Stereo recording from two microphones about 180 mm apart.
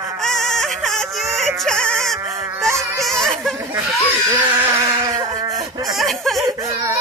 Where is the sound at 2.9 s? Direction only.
Centre (ahead or behind).